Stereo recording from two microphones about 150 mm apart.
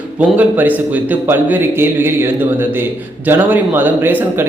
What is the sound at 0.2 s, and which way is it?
A man's voice, 10° right (ahead or behind).